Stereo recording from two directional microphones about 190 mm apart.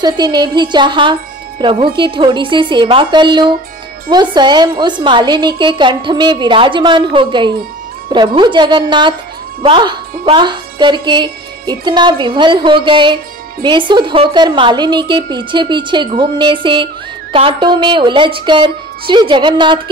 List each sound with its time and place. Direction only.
0.0 s speech: 20° right (ahead or behind)